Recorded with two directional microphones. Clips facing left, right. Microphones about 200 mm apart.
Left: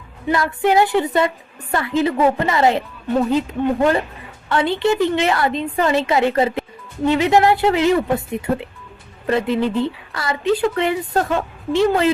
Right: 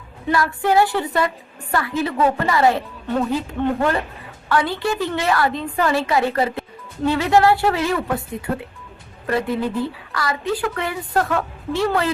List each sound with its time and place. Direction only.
0.3 s a woman's voice: 20° left (ahead or behind)